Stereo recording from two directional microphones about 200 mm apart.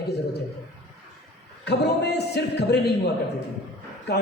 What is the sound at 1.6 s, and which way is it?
A man's voice, 55° left (ahead or behind).